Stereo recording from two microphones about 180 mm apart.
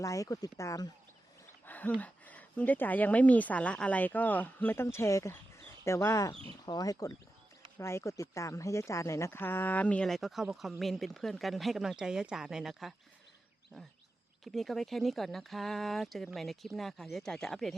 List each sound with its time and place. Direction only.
0.0 s a woman's voice: 20° left (ahead or behind)
1.6 s a sound: 10° left (ahead or behind)
2.0 s a woman's voice: 10° left (ahead or behind)
14.4 s speech: centre (ahead or behind)